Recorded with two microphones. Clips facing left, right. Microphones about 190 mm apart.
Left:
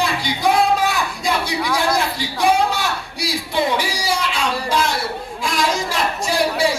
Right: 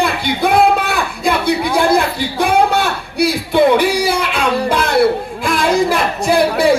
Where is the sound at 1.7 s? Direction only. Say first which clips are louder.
Right 4 dB; 55° right (ahead or behind).